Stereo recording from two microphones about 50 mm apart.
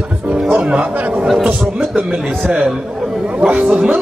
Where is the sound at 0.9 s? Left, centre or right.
Right.